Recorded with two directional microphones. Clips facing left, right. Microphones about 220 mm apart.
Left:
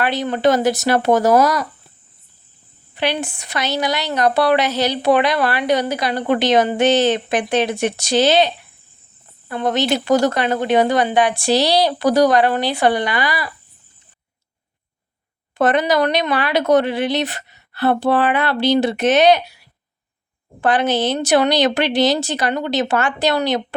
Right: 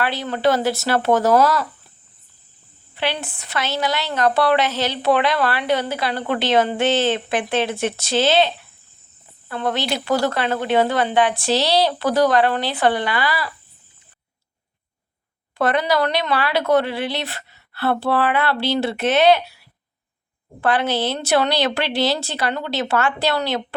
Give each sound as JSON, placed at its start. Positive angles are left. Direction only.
{"t": 0.0, "sound": "speech", "side_deg": 20}
{"t": 2.9, "sound": "speech", "side_deg": 15}
{"t": 15.5, "sound": "speech", "side_deg": 20}